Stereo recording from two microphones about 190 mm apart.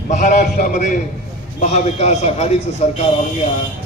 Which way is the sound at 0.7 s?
40° left (ahead or behind).